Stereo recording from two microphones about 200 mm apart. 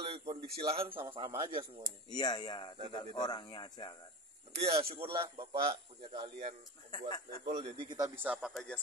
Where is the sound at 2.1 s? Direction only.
20° left (ahead or behind).